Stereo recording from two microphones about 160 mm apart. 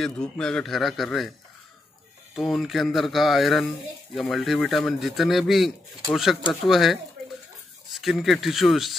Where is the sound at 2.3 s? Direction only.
Centre (ahead or behind).